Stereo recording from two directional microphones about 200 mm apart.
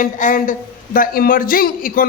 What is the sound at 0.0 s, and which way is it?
A man's voice, 40° left (ahead or behind).